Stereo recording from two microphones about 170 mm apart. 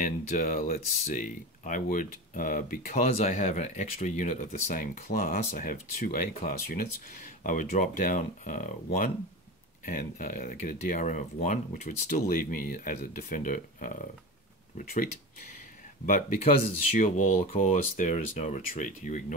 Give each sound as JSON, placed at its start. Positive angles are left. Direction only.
{"t": 0.0, "sound": "speech", "side_deg": 50}
{"t": 16.9, "sound": "speech", "side_deg": 45}